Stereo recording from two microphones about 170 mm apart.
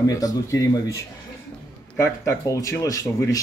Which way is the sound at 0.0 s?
20° left (ahead or behind).